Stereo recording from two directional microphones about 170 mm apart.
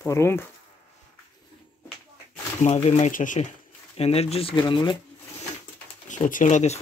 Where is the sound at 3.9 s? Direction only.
35° left (ahead or behind).